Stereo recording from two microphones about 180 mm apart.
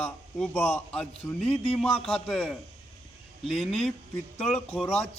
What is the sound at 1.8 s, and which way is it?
A man's voice, centre (ahead or behind).